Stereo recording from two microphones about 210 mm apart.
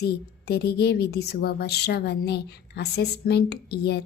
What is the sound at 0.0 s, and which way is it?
Speech, 50° left (ahead or behind).